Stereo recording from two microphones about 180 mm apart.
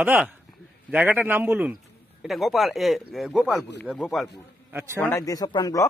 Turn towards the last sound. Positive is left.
turn(degrees=20)  # may be behind; listen again after turning